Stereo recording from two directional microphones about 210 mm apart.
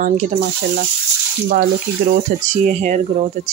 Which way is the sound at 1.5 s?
40° right (ahead or behind).